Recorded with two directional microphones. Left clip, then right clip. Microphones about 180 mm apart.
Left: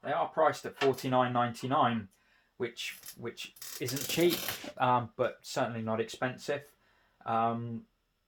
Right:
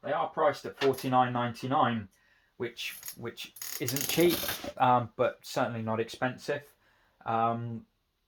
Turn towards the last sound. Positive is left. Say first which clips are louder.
# right 2 dB
turn(degrees=-30)  # may be behind; listen again after turning